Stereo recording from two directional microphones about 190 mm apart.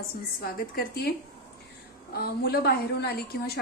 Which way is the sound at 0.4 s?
50° left (ahead or behind).